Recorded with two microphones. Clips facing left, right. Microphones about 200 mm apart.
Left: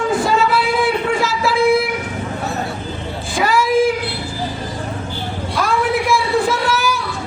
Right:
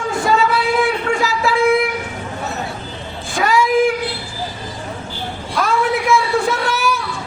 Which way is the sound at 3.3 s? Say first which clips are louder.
Even; centre (ahead or behind).